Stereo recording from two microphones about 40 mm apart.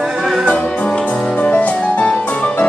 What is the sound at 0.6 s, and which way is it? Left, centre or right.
Music, left.